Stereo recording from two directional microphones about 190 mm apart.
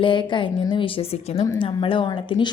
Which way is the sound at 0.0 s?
25° left (ahead or behind).